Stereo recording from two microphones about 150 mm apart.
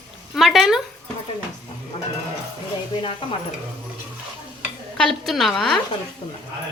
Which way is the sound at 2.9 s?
35° left (ahead or behind).